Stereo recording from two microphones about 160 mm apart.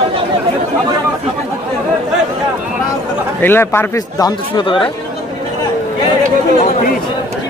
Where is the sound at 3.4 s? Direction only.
15° left (ahead or behind); by 4.9 s 30° left (ahead or behind).